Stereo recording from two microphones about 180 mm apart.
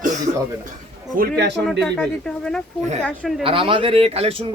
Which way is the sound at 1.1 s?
60° right (ahead or behind).